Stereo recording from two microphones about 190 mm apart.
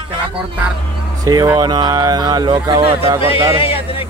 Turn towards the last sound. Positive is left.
turn(degrees=30)  # may be behind; listen again after turning